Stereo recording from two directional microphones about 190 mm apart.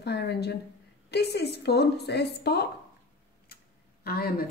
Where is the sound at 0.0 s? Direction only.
60° left (ahead or behind).